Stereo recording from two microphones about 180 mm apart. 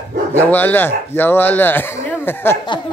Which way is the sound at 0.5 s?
10° left (ahead or behind).